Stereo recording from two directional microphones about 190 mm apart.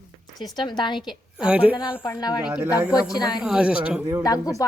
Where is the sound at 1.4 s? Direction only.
5° right (ahead or behind).